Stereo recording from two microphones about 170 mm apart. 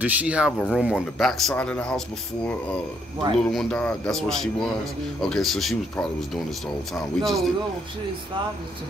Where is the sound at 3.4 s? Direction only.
5° left (ahead or behind).